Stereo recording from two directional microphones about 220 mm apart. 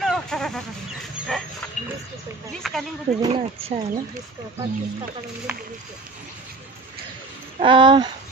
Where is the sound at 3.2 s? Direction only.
25° right (ahead or behind).